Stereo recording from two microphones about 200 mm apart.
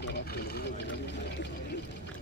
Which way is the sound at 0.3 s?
50° left (ahead or behind).